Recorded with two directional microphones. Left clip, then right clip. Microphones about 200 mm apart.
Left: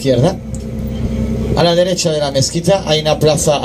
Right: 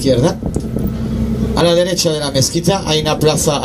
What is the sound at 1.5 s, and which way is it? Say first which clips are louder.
Speech: left 1 dB; 50° right (ahead or behind).